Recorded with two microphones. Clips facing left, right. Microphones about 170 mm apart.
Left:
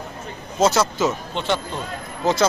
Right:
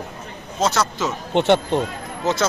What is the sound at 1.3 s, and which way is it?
Speech, 60° right (ahead or behind).